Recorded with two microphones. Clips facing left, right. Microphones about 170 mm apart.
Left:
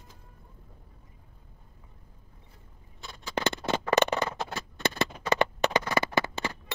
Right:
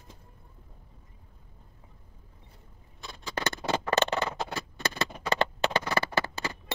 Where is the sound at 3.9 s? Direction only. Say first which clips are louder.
Left 3 dB; 15° left (ahead or behind).